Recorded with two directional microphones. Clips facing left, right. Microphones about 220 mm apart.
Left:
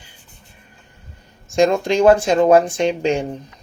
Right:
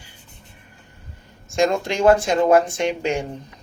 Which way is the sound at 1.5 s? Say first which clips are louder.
Left 5 dB; 20° left (ahead or behind).